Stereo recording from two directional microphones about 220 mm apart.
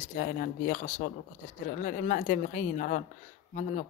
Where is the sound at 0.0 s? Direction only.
40° left (ahead or behind).